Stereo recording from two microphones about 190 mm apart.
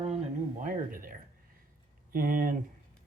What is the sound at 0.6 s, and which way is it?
Speech, 45° right (ahead or behind).